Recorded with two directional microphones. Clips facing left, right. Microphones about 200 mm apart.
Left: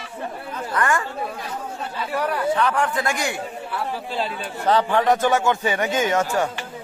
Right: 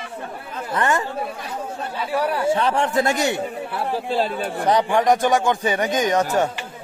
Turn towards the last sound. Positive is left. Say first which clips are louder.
# right 2 dB
turn(degrees=-20)  # may be behind; listen again after turning